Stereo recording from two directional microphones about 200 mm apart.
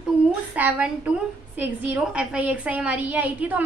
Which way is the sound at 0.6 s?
5° right (ahead or behind).